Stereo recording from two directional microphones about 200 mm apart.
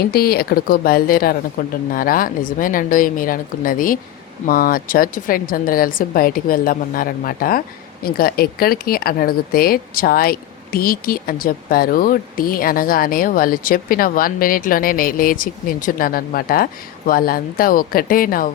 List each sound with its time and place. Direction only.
0.0 s speech: 50° left (ahead or behind)